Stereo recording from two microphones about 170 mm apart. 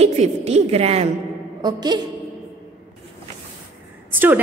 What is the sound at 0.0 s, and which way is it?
A woman's voice, 40° right (ahead or behind).